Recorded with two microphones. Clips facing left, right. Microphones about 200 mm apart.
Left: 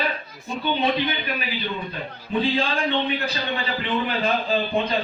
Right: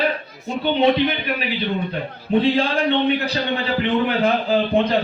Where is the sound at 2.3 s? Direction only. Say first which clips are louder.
Right 5 dB; 65° right (ahead or behind).